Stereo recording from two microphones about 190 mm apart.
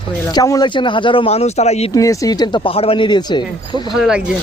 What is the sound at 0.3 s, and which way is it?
Speech, 20° left (ahead or behind).